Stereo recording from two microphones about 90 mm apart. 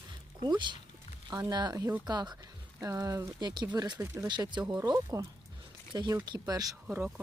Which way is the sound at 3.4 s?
55° right (ahead or behind).